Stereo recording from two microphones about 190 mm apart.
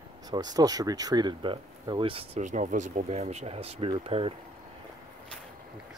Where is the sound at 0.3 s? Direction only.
20° right (ahead or behind).